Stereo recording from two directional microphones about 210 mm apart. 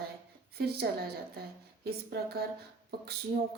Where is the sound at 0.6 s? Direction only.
50° right (ahead or behind).